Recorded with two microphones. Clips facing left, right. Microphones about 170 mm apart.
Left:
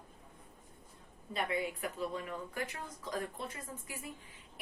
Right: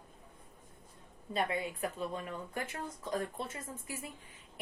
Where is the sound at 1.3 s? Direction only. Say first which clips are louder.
Right 1 dB; 30° right (ahead or behind).